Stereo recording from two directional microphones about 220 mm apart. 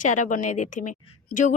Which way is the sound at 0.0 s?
35° left (ahead or behind).